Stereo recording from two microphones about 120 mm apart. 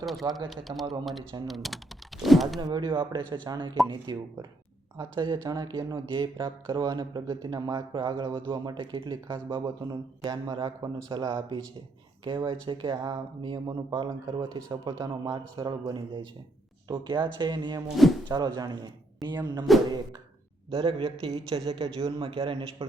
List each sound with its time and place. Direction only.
0.0 s speech: centre (ahead or behind)
2.6 s speech: 40° right (ahead or behind)
12.2 s speech: 40° right (ahead or behind)
17.8 s speech: centre (ahead or behind)
18.3 s speech: 35° right (ahead or behind)
19.7 s speech: centre (ahead or behind)
20.7 s a man's voice: 45° right (ahead or behind)